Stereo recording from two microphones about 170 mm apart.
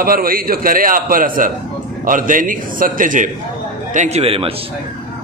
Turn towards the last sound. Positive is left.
turn(degrees=-35)  # may be behind; listen again after turning